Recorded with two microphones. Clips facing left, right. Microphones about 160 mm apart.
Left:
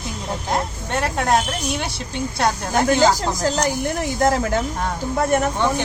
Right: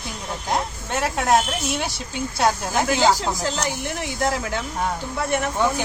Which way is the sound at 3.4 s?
40° left (ahead or behind).